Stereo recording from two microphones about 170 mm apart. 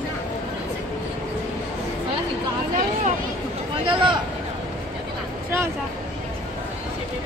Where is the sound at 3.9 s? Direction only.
30° right (ahead or behind).